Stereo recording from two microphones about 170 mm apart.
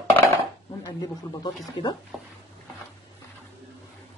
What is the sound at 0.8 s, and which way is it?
Speech, 20° left (ahead or behind).